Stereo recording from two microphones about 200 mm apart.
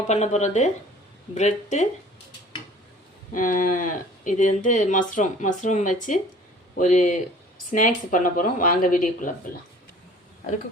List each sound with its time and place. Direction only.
0.1 s speech: 35° left (ahead or behind)
3.3 s speech: 40° left (ahead or behind)